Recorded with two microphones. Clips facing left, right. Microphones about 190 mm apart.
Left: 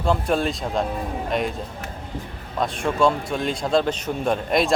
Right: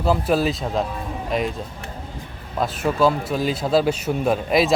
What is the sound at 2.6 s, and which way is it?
A man's voice, 5° right (ahead or behind).